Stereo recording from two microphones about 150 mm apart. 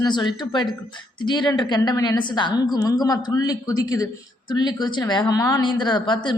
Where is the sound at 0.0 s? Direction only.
30° left (ahead or behind).